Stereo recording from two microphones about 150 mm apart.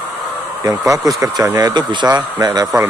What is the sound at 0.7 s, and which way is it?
Speech, 25° right (ahead or behind).